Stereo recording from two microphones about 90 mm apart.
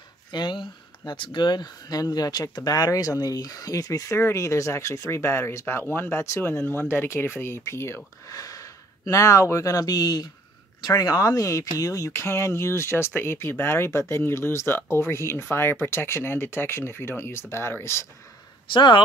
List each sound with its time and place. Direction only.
0.3 s speech: 55° left (ahead or behind); by 18.0 s 30° left (ahead or behind)
18.7 s speech: 60° left (ahead or behind)